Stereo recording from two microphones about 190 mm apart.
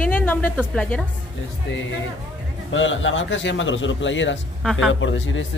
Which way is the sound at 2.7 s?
90° left.